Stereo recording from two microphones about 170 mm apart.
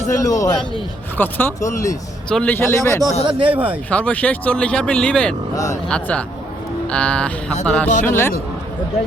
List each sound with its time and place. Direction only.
0.2 s a man's voice: 20° left (ahead or behind)
3.2 s speech: 30° right (ahead or behind)
3.5 s speech: 10° right (ahead or behind)
3.8 s speech: 10° left (ahead or behind)